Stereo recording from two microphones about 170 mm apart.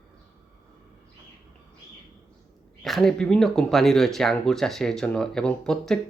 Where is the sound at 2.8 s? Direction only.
Centre (ahead or behind).